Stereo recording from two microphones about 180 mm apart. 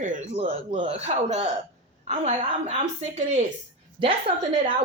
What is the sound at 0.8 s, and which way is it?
Speech, 35° right (ahead or behind).